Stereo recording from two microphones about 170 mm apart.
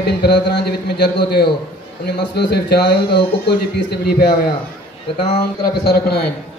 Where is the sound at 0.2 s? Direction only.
80° left.